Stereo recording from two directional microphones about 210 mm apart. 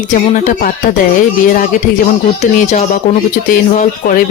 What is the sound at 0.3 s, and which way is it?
Speech, 35° left (ahead or behind).